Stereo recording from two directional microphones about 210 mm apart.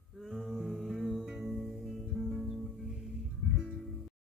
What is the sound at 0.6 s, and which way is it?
Music, centre (ahead or behind).